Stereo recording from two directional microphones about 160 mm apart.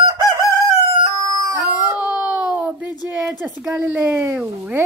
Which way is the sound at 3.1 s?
15° right (ahead or behind).